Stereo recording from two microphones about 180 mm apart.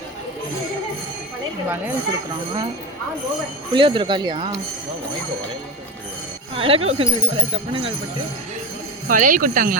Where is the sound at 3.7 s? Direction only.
30° right (ahead or behind).